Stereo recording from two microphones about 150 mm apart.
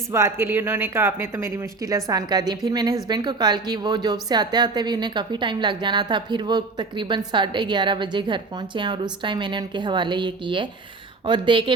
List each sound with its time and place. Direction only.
0.1 s a woman's voice: 20° right (ahead or behind); by 11.7 s 35° right (ahead or behind)